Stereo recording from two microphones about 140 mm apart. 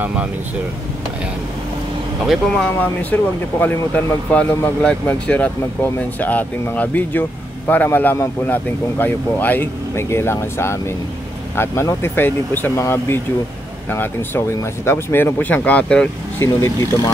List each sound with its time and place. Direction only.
2.2 s speech: 5° left (ahead or behind)
16.3 s speech: 20° left (ahead or behind)